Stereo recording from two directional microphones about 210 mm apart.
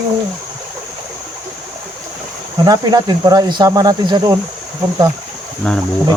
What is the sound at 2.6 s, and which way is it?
Speech, 20° right (ahead or behind).